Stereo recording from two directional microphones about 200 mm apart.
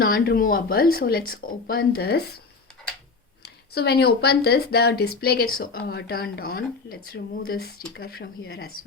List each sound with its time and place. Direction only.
0.0 s speech: 45° left (ahead or behind)
3.4 s speech: 55° left (ahead or behind)